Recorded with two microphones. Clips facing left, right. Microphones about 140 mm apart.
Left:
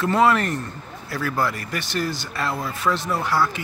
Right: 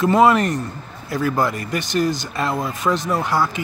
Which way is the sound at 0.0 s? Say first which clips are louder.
Right 4 dB; 15° right (ahead or behind).